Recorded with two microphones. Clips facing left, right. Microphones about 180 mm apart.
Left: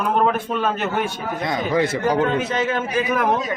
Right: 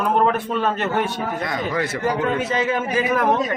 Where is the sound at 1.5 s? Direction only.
20° left (ahead or behind).